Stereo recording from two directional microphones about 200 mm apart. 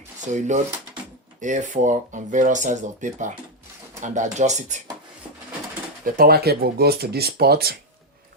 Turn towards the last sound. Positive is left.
turn(degrees=-50)  # may be behind; listen again after turning